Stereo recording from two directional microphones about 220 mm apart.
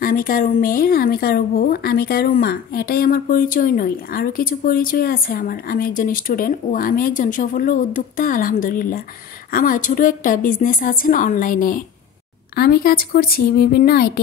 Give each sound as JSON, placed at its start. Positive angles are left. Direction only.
{"t": 0.0, "sound": "a woman's voice", "side_deg": 40}